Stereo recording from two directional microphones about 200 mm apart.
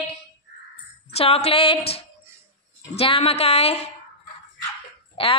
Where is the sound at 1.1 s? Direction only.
30° left (ahead or behind).